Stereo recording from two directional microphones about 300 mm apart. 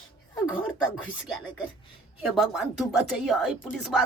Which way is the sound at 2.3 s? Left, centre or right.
Centre.